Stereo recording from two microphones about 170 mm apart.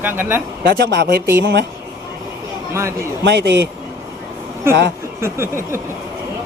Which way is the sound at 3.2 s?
90° right.